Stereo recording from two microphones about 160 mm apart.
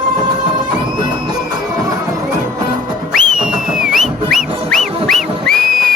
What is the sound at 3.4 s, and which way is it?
Music, 5° right (ahead or behind).